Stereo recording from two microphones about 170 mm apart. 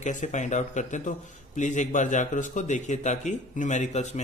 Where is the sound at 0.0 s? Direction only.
45° left (ahead or behind).